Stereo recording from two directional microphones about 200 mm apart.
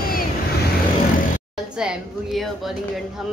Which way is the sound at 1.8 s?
5° right (ahead or behind).